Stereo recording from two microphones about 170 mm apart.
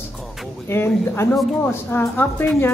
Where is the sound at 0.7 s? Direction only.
15° left (ahead or behind).